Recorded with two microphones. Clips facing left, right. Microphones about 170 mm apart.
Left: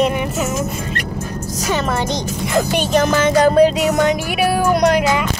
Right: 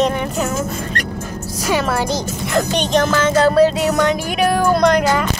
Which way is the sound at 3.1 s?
15° left (ahead or behind).